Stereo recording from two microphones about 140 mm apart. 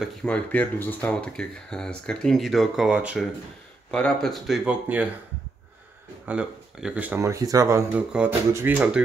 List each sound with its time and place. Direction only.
0.0 s speech: 5° left (ahead or behind)
3.9 s speech: 5° left (ahead or behind)
4.6 s speech: 10° right (ahead or behind)
6.2 s speech: 10° right (ahead or behind)
7.2 s speech: 20° right (ahead or behind)
8.1 s speech: 5° right (ahead or behind)